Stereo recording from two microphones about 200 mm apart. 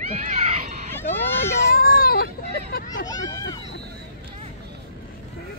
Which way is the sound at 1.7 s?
45° left (ahead or behind).